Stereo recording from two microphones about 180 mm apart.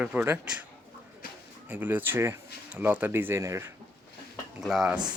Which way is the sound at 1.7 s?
10° right (ahead or behind).